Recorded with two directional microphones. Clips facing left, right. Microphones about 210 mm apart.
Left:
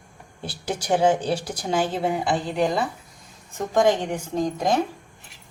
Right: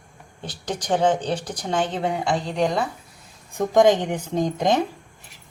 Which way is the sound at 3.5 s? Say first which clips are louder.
Right 3 dB; 15° right (ahead or behind).